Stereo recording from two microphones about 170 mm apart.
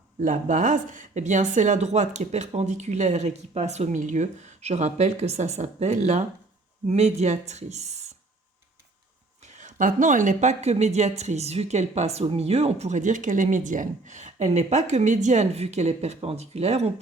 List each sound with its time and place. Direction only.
0.2 s a woman's voice: 50° right (ahead or behind)
9.5 s a woman's voice: 45° right (ahead or behind)